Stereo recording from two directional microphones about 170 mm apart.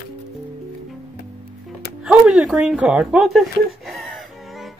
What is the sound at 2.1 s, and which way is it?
Speech, 5° right (ahead or behind).